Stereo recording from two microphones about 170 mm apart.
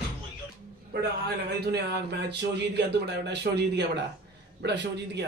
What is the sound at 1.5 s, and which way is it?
A man's voice, 70° right (ahead or behind).